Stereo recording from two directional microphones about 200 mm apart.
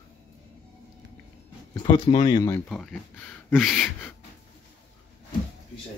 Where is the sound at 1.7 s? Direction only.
25° left (ahead or behind).